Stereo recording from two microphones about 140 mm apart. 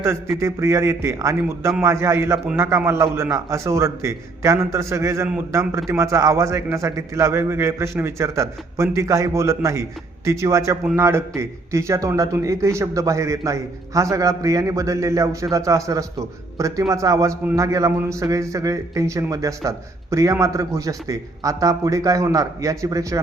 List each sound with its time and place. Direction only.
0.3 s a man's voice: 20° right (ahead or behind)